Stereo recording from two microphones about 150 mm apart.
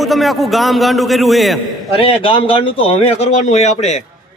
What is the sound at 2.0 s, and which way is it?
A man's voice, 40° left (ahead or behind).